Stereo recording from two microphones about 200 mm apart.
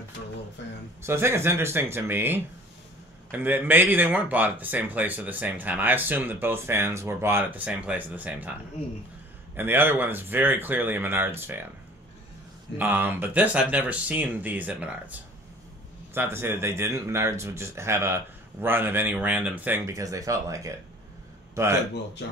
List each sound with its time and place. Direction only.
0.6 s a sound: 60° left (ahead or behind)
1.0 s speech: 10° right (ahead or behind)
9.6 s speech: 10° right (ahead or behind)
12.7 s speech: 10° right (ahead or behind)